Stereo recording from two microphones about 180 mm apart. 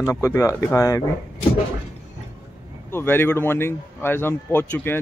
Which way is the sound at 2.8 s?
10° left (ahead or behind).